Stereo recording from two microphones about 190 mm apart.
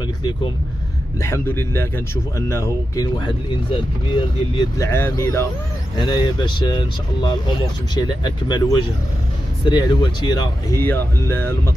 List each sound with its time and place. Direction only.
1.2 s speech: 10° left (ahead or behind)